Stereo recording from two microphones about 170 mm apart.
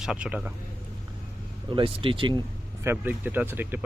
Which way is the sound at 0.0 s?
5° right (ahead or behind).